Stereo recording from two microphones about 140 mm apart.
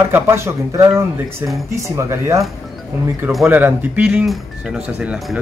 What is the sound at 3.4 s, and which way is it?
Speech, 15° right (ahead or behind).